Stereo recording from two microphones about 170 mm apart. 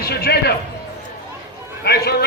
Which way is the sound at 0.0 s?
70° left (ahead or behind).